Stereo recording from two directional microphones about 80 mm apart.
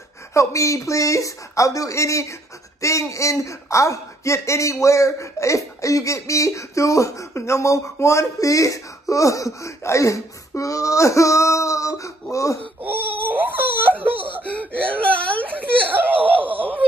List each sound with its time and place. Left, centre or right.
0.3 s speech: left
12.8 s wail: right
14.4 s speech: centre
15.5 s wail: right
16.2 s giggle: right
16.4 s wail: right